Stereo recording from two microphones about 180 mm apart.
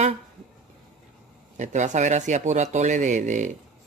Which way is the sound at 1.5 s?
40° right (ahead or behind).